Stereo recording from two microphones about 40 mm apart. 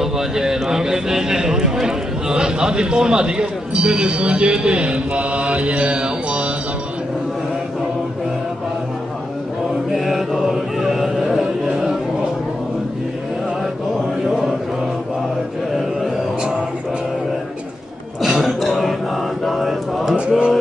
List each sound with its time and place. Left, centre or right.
0.0 s a man's voice: centre
9.8 s chant: centre
14.2 s chant: centre
18.2 s a sound: centre
19.4 s mantra: centre
20.2 s mantra: right